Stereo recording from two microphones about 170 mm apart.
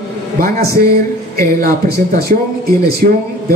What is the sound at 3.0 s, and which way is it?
Speech, 50° right (ahead or behind).